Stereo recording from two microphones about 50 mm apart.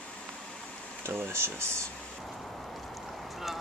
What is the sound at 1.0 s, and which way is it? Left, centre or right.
Speech, right.